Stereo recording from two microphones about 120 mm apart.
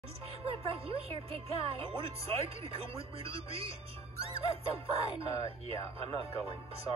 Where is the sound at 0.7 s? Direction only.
55° right (ahead or behind).